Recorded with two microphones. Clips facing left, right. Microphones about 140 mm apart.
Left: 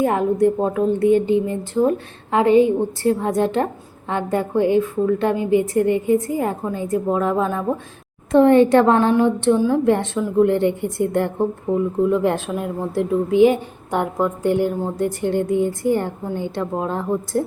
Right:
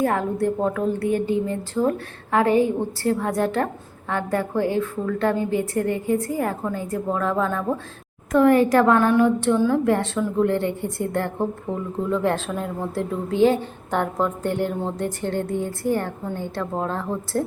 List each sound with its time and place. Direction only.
0.0 s a woman's voice: 20° left (ahead or behind)